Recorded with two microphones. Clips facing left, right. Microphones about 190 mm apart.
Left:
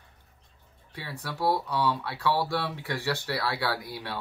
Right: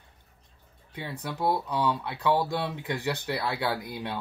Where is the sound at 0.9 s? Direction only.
20° right (ahead or behind).